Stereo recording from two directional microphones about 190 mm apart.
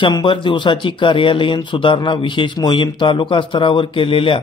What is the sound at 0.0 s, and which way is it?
Speech, 25° left (ahead or behind).